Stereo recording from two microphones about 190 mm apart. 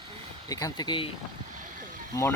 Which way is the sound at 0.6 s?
20° left (ahead or behind).